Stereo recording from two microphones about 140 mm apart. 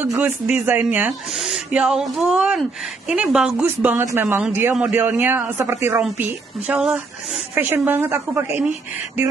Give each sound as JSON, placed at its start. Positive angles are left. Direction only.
{"t": 0.0, "sound": "speech", "side_deg": -15}
{"t": 6.8, "sound": "speech", "side_deg": -5}
{"t": 7.5, "sound": "speech", "side_deg": -15}